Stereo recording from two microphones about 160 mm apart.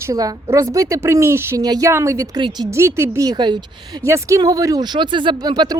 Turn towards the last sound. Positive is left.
turn(degrees=-25)  # may be behind; listen again after turning